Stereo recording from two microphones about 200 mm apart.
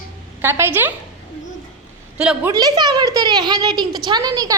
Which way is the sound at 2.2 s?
5° right (ahead or behind).